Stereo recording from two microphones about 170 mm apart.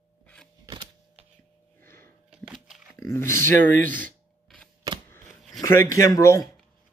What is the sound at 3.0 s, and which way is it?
Speech, 15° left (ahead or behind).